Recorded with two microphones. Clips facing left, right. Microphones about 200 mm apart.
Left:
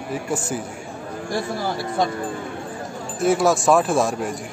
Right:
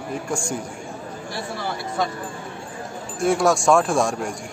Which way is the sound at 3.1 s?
Centre (ahead or behind).